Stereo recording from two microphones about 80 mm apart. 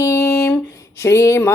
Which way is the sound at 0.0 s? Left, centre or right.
Left.